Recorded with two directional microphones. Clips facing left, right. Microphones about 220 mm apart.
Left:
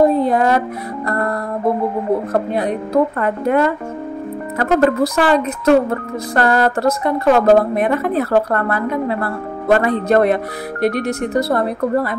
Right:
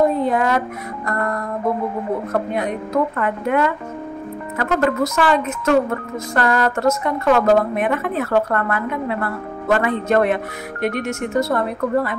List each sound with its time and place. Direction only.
0.0 s speech: 35° left (ahead or behind)